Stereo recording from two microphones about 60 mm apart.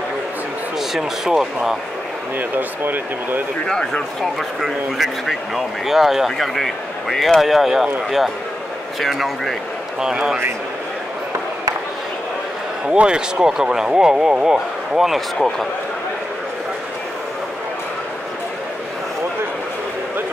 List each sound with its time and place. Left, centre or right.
0.7 s speech: centre
2.3 s speech: right
3.6 s speech: centre
4.2 s speech: centre
9.9 s speech: centre
12.8 s speech: centre